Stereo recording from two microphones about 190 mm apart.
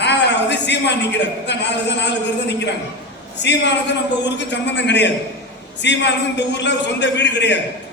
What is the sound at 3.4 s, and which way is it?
A man's voice, 65° left (ahead or behind).